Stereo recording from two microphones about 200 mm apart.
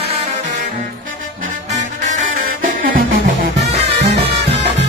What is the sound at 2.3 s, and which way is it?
Music, 40° right (ahead or behind).